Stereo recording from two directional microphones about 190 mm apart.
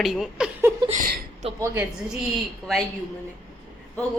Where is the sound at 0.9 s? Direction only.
45° right (ahead or behind).